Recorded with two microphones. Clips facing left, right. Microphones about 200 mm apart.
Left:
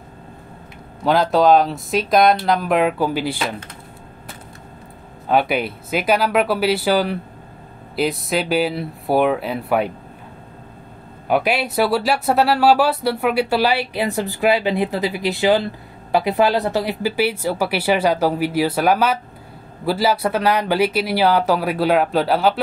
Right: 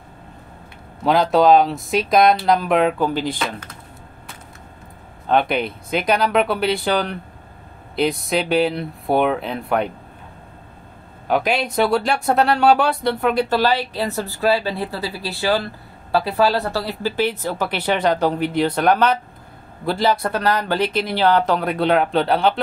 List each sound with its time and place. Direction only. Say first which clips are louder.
1.0 s speech: even; centre (ahead or behind)
5.3 s speech: even; 5° left (ahead or behind)
11.2 s speech: left 1 dB; 5° left (ahead or behind)